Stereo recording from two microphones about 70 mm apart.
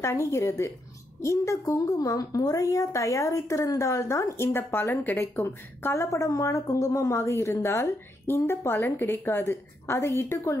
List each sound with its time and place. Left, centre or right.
0.0 s speech: left
6.0 s speech: left